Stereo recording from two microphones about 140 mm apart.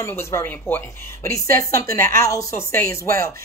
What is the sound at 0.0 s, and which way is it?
A woman's voice, 15° left (ahead or behind).